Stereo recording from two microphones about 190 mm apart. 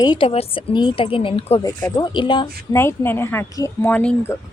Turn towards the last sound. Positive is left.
turn(degrees=10)  # may be behind; listen again after turning